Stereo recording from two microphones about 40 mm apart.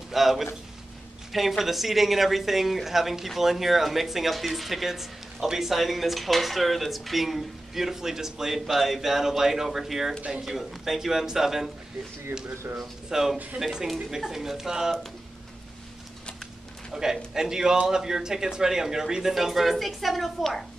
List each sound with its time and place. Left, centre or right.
0.1 s a man's voice: centre
1.6 s speech: centre
12.3 s speech: right
12.7 s speech: centre
16.9 s speech: centre